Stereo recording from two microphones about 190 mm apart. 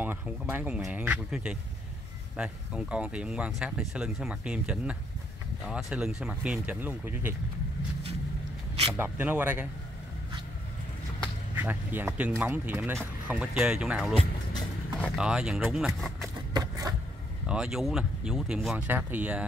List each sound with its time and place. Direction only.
0.0 s speech: 10° right (ahead or behind)
8.9 s speech: 10° right (ahead or behind)
11.5 s speech: 10° right (ahead or behind)
16.5 s vehicle: 20° right (ahead or behind)
17.5 s speech: 5° right (ahead or behind)